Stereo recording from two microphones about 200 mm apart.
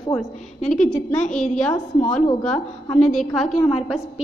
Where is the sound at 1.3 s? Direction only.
5° left (ahead or behind).